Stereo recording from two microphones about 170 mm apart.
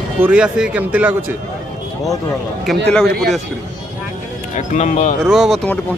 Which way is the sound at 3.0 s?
65° right (ahead or behind).